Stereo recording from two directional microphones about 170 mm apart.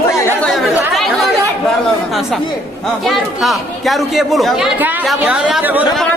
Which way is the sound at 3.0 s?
Centre (ahead or behind).